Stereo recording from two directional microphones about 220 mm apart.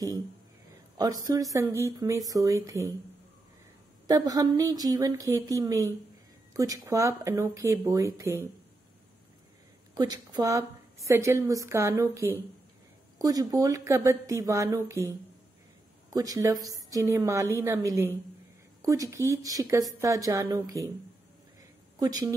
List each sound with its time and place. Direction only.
0.9 s a woman's voice: 15° right (ahead or behind)
4.1 s a woman's voice: 15° right (ahead or behind)
9.9 s a woman's voice: 20° right (ahead or behind)
16.1 s a woman's voice: 15° right (ahead or behind)